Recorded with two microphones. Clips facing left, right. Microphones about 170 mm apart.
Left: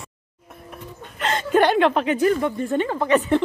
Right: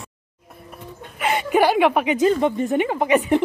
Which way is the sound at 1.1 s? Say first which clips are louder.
Even; 10° right (ahead or behind).